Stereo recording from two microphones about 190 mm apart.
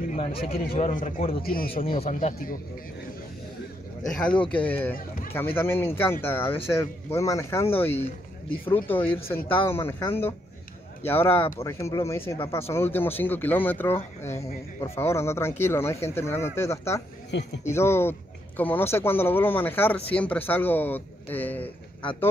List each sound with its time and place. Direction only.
0.1 s a man's voice: 30° left (ahead or behind)
1.4 s a man's voice: 50° left (ahead or behind)
2.0 s a man's voice: 35° left (ahead or behind)
4.1 s speech: 5° left (ahead or behind)
17.3 s speech: 70° left (ahead or behind)
17.6 s speech: 15° left (ahead or behind)